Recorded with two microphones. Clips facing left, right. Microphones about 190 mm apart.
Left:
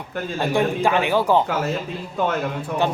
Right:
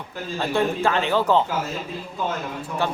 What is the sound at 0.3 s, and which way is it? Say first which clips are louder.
Speech: left 2 dB; 15° left (ahead or behind).